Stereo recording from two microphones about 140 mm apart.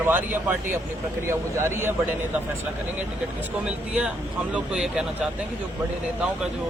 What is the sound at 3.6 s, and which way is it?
Speech, 5° right (ahead or behind).